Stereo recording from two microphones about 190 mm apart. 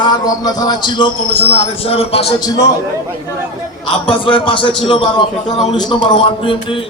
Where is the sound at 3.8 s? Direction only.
25° left (ahead or behind).